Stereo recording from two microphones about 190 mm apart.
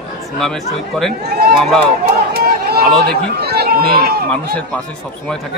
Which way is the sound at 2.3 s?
55° right (ahead or behind).